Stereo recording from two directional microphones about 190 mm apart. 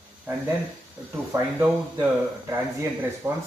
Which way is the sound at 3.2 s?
15° right (ahead or behind).